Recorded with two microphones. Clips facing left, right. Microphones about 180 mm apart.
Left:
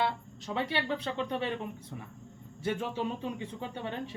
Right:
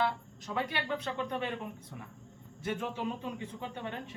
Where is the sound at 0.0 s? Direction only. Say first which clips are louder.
Left 1 dB; 30° left (ahead or behind).